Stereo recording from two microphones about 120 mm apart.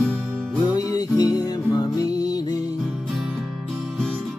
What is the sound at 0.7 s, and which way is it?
Music, 30° left (ahead or behind).